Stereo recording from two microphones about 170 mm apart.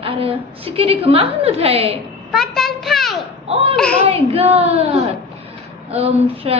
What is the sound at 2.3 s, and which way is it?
A child's voice, centre (ahead or behind).